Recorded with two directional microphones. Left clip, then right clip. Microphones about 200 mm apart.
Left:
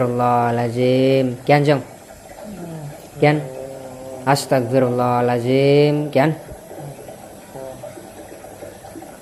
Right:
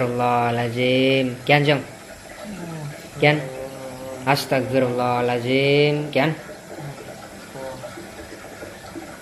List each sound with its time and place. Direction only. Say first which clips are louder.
0.0 s speech: left 3 dB; 25° left (ahead or behind)
3.2 s speech: left 2 dB; 30° left (ahead or behind)